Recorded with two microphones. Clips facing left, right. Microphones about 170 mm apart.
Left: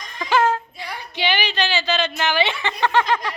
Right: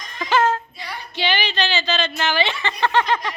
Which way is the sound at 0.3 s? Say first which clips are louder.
Even; 15° left (ahead or behind).